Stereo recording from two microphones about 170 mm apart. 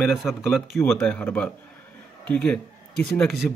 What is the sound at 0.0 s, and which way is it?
A man's voice, centre (ahead or behind).